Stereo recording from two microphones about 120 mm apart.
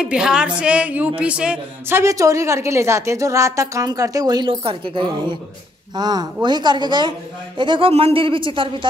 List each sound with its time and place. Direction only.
0.0 s speech: 5° right (ahead or behind)
2.0 s a woman's voice: 25° right (ahead or behind); by 8.8 s 45° right (ahead or behind)